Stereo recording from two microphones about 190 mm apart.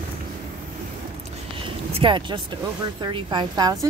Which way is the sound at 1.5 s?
25° right (ahead or behind).